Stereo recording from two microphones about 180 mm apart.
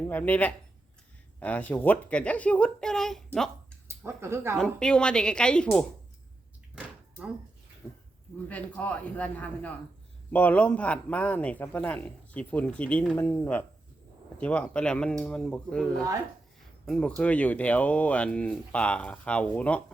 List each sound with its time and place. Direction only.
0.0 s speech: 10° left (ahead or behind)
3.3 s a sound: centre (ahead or behind)
3.8 s speech: 15° right (ahead or behind)
4.5 s a woman's voice: 5° left (ahead or behind)
7.8 s a woman's voice: 15° left (ahead or behind)